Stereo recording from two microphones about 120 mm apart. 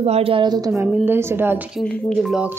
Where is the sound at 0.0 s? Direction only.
55° right (ahead or behind).